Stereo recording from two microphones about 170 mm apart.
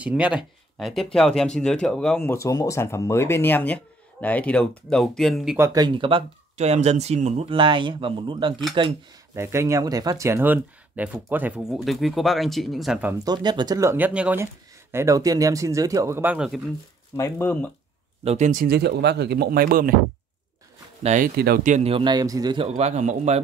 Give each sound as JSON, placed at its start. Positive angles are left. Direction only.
{"t": 0.0, "sound": "speech", "side_deg": -5}
{"t": 5.6, "sound": "a man's voice", "side_deg": -20}
{"t": 9.3, "sound": "speech", "side_deg": -15}
{"t": 13.2, "sound": "speech", "side_deg": -25}
{"t": 17.2, "sound": "speech", "side_deg": 10}
{"t": 18.2, "sound": "speech", "side_deg": -40}
{"t": 18.7, "sound": "speech", "side_deg": -75}
{"t": 21.0, "sound": "speech", "side_deg": -45}
{"t": 21.4, "sound": "speech", "side_deg": -65}
{"t": 21.7, "sound": "a man's voice", "side_deg": -35}
{"t": 22.8, "sound": "speech", "side_deg": -40}